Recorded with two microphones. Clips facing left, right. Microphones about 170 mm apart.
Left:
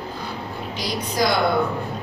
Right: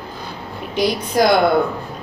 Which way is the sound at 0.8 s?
55° right (ahead or behind).